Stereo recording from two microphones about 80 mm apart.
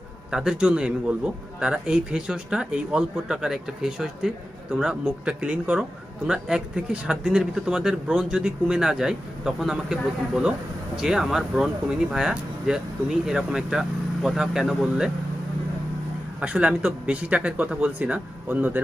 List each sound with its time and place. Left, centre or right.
0.3 s a man's voice: centre
16.3 s a man's voice: centre